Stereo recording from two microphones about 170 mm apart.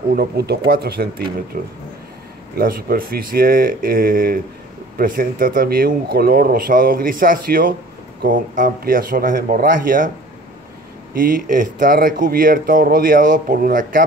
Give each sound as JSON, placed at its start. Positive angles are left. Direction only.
{"t": 0.1, "sound": "speech", "side_deg": -70}
{"t": 11.1, "sound": "speech", "side_deg": -50}